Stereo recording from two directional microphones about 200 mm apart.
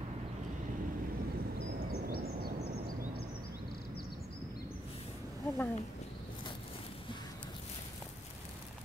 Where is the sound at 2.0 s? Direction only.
50° right (ahead or behind).